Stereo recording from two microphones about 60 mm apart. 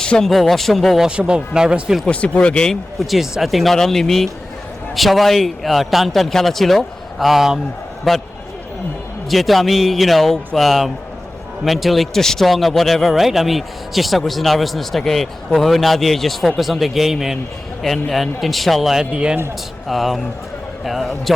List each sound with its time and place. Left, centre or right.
0.0 s speech: centre
0.3 s a man's voice: centre
1.0 s speech: centre
2.0 s speech: left
3.0 s a man's voice: centre
9.3 s a man's voice: centre
19.1 s speech: centre
19.9 s a man's voice: centre